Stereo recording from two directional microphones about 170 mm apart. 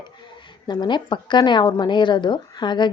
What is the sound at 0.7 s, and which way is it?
Speech, 25° left (ahead or behind).